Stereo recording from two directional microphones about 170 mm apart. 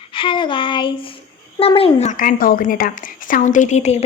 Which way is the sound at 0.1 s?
30° left (ahead or behind).